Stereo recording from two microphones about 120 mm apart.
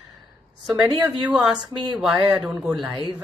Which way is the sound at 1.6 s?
40° right (ahead or behind).